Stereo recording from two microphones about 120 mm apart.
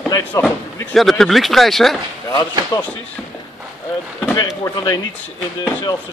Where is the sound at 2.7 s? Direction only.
30° left (ahead or behind).